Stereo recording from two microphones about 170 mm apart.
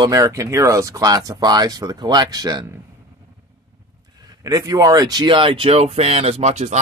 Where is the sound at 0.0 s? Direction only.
20° right (ahead or behind).